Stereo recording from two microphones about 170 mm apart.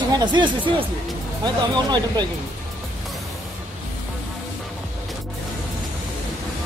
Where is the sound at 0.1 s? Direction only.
25° right (ahead or behind).